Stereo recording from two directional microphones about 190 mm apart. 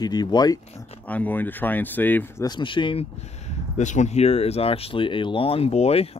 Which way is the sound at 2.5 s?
25° left (ahead or behind).